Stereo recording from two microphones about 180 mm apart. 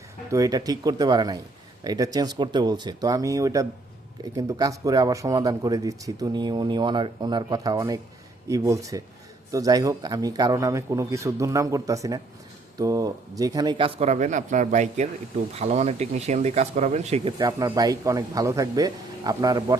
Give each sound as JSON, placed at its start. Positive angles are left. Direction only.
{"t": 0.3, "sound": "speech", "side_deg": -20}
{"t": 17.3, "sound": "speech", "side_deg": -20}